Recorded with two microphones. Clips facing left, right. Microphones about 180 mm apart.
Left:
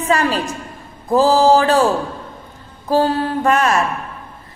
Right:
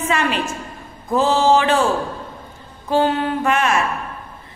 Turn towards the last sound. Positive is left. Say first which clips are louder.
# left 2 dB
turn(degrees=40)  # may be behind; listen again after turning